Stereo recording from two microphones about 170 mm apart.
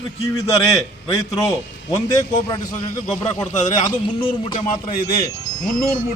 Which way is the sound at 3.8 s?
25° left (ahead or behind).